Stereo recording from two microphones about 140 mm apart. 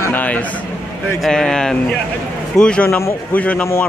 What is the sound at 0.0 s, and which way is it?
A man's voice, 10° left (ahead or behind).